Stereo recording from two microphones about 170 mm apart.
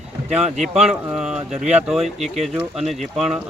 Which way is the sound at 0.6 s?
5° right (ahead or behind).